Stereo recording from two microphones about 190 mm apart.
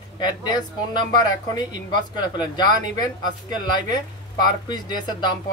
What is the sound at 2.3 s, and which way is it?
Speech, 20° left (ahead or behind).